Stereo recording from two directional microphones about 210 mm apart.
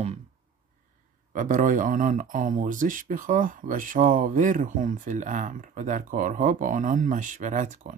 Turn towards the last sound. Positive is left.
turn(degrees=-35)  # may be behind; listen again after turning